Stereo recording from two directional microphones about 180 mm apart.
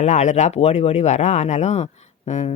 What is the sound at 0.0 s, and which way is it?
Speech, 40° left (ahead or behind).